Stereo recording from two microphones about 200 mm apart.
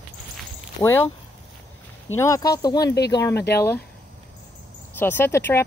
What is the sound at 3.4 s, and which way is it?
Speech, 55° left (ahead or behind).